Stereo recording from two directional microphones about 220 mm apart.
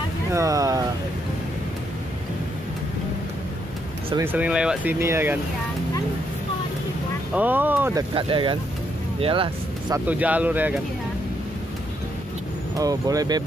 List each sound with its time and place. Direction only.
0.3 s speech: 15° right (ahead or behind)
4.2 s speech: 10° right (ahead or behind)
7.3 s speech: 10° right (ahead or behind)
8.1 s speech: 20° right (ahead or behind)
9.9 s speech: 5° right (ahead or behind)
12.7 s speech: 15° right (ahead or behind)